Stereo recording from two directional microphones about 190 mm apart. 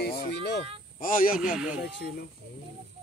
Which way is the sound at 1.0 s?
45° left (ahead or behind).